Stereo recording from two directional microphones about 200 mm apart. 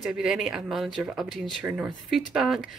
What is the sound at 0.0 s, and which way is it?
Speech, 5° right (ahead or behind).